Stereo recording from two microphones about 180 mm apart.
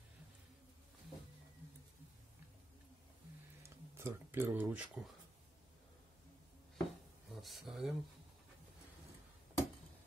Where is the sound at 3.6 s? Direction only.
15° right (ahead or behind).